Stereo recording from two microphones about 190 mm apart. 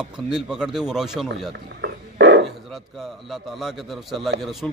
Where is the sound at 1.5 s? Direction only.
60° right (ahead or behind).